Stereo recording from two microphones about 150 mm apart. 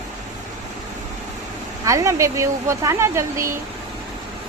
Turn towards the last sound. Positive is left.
turn(degrees=-20)  # may be behind; listen again after turning